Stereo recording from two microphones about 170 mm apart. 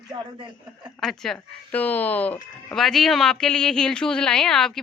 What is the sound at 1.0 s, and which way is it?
Speech, centre (ahead or behind).